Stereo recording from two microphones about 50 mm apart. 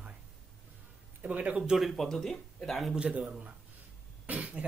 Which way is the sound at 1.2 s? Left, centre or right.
Right.